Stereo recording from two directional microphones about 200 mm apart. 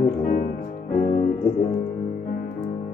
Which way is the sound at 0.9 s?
45° left (ahead or behind).